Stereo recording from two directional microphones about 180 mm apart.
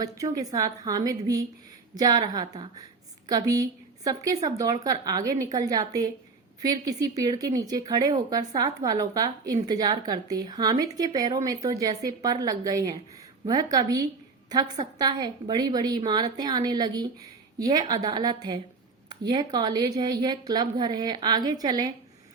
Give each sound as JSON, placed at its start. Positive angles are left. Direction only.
{"t": 0.0, "sound": "a woman's voice", "side_deg": -20}